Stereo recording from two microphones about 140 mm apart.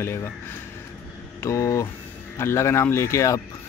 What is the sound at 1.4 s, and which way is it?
Speech, 20° left (ahead or behind).